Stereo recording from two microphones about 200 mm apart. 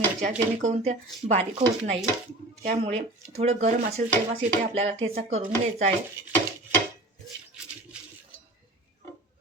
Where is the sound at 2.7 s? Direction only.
35° right (ahead or behind).